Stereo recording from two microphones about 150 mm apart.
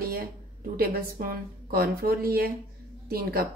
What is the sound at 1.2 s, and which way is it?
A woman's voice, 80° right.